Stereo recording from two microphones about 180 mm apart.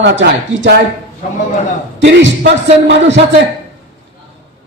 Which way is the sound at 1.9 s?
90° right.